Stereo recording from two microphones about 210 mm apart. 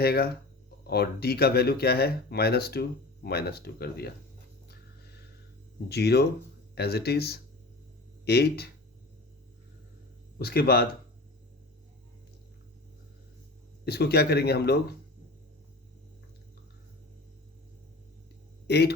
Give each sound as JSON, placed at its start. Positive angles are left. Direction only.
{"t": 0.0, "sound": "speech", "side_deg": 50}
{"t": 5.9, "sound": "speech", "side_deg": 50}
{"t": 10.3, "sound": "speech", "side_deg": 45}
{"t": 13.8, "sound": "speech", "side_deg": 50}
{"t": 18.7, "sound": "speech", "side_deg": 50}